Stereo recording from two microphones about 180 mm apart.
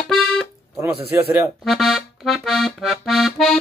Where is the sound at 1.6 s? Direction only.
Centre (ahead or behind).